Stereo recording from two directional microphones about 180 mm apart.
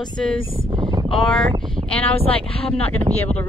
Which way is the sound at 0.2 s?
5° left (ahead or behind).